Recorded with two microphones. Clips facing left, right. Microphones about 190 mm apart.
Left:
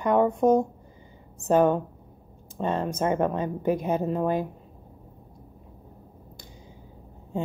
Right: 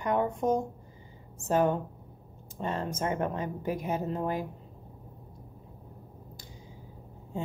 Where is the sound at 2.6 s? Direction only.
20° left (ahead or behind).